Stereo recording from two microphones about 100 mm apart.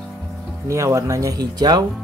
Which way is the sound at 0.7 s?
30° right (ahead or behind).